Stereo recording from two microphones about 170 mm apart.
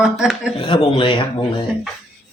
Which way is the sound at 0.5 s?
30° left (ahead or behind).